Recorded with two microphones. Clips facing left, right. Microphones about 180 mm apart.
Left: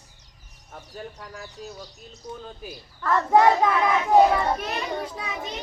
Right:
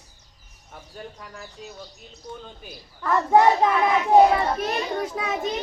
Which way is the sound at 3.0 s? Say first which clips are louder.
Right 1 dB; 10° right (ahead or behind).